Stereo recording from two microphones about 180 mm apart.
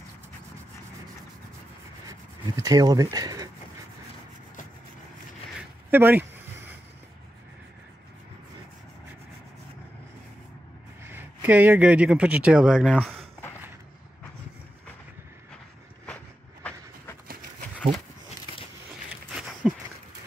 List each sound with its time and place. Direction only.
2.0 s speech: 20° right (ahead or behind)
5.9 s speech: 10° right (ahead or behind)
11.1 s speech: 10° right (ahead or behind)
19.6 s a sound: centre (ahead or behind)